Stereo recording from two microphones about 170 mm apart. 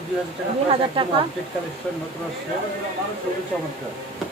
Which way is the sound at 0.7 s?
30° right (ahead or behind).